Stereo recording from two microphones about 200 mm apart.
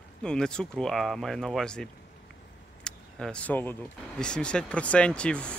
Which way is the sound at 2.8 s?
5° left (ahead or behind).